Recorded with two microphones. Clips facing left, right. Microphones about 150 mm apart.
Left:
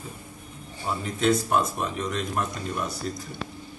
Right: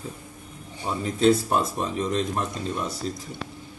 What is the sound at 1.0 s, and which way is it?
Speech, 35° right (ahead or behind).